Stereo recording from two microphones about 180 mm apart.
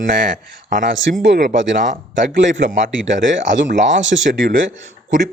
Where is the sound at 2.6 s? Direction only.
40° right (ahead or behind).